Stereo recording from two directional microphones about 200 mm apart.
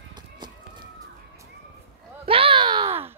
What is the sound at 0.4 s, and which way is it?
Run, 20° right (ahead or behind).